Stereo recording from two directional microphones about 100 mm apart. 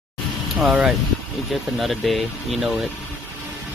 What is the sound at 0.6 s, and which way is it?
Speech, 5° right (ahead or behind).